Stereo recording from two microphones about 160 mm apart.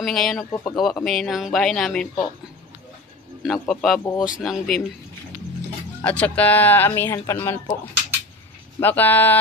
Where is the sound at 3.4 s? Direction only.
Centre (ahead or behind).